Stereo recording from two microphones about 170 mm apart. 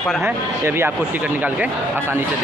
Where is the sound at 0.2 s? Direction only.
15° right (ahead or behind).